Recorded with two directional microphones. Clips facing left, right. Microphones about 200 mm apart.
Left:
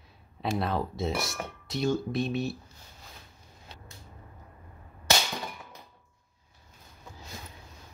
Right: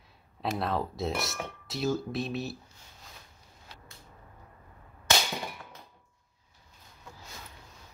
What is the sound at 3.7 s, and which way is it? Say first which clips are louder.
Vehicle: left 2 dB; 25° left (ahead or behind).